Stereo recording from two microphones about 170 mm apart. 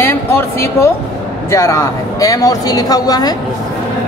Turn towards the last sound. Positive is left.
turn(degrees=20)  # may be behind; listen again after turning